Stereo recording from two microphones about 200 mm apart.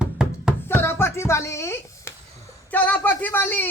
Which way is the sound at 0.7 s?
10° left (ahead or behind).